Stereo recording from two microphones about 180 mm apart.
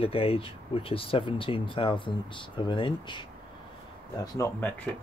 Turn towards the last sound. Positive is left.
turn(degrees=10)  # may be behind; listen again after turning